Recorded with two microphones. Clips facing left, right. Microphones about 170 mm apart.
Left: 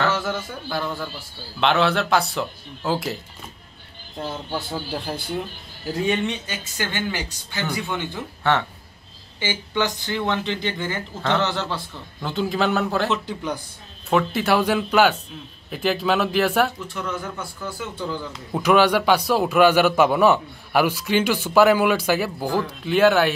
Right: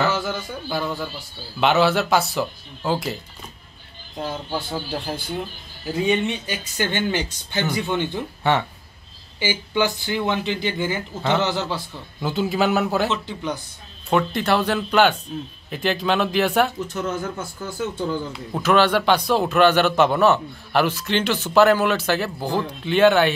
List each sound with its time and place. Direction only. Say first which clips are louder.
0.0 s a man's voice: even; centre (ahead or behind)
4.2 s speech: right 1 dB; 5° right (ahead or behind)
6.8 s a man's voice: right 4 dB; 20° right (ahead or behind)
13.1 s a man's voice: left 1 dB; 10° left (ahead or behind)
16.8 s speech: right 3 dB; 45° right (ahead or behind)
18.5 s a man's voice: left 1 dB; 10° left (ahead or behind)